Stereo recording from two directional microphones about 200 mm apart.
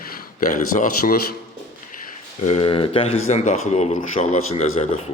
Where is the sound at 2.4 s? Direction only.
30° left (ahead or behind).